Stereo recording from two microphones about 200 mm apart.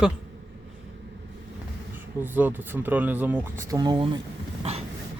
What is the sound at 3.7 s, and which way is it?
Speech, 20° right (ahead or behind).